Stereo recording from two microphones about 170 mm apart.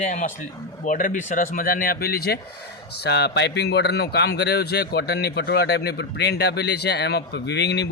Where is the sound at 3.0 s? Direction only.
80° left.